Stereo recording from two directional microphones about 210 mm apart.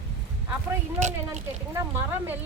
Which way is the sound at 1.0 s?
35° right (ahead or behind).